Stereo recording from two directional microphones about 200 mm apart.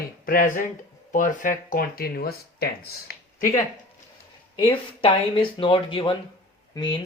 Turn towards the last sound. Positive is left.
turn(degrees=20)  # may be behind; listen again after turning